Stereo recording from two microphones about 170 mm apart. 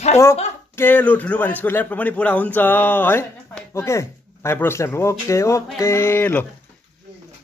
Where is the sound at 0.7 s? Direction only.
10° left (ahead or behind).